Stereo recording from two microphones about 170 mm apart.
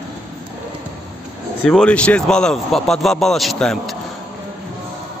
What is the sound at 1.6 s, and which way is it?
Speech, 5° left (ahead or behind).